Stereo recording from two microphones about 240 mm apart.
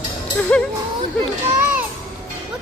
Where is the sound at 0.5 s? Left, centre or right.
Centre.